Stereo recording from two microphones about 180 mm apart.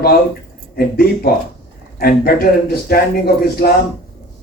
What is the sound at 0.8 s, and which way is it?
A man's voice, 55° left (ahead or behind).